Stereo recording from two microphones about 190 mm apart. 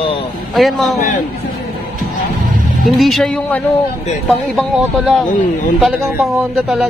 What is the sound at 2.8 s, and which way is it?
Speech, centre (ahead or behind).